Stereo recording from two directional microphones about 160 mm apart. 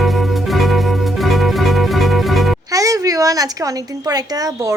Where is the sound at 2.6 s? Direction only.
20° right (ahead or behind).